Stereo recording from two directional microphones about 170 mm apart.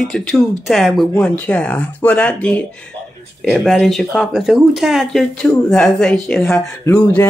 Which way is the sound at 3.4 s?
5° right (ahead or behind).